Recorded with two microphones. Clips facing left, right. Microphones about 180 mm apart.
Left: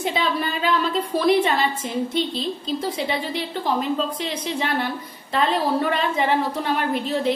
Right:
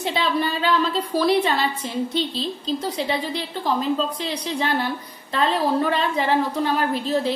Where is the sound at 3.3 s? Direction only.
40° right (ahead or behind).